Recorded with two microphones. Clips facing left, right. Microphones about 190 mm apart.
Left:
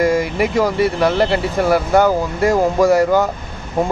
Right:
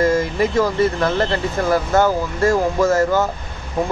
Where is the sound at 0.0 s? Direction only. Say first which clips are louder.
Left 1 dB; 15° left (ahead or behind).